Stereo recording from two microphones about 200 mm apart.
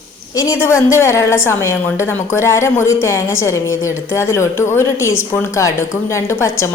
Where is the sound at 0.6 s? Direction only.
15° left (ahead or behind).